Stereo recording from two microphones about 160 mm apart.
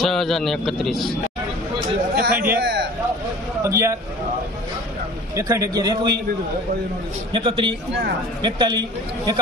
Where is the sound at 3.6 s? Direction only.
20° right (ahead or behind).